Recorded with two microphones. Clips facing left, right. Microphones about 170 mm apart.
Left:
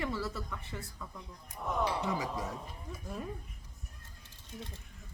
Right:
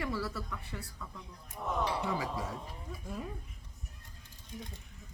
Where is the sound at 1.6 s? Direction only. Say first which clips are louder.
Left 1 dB; centre (ahead or behind).